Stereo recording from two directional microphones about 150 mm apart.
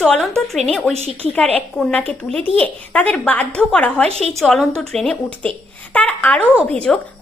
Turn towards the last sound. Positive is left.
turn(degrees=5)  # may be behind; listen again after turning